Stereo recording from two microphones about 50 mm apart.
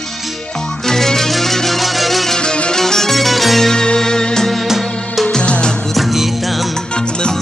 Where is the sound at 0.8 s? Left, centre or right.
Centre.